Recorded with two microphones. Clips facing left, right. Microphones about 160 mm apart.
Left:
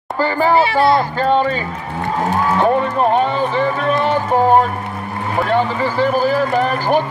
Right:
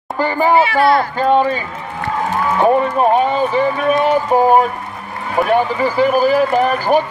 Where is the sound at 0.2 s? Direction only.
15° right (ahead or behind).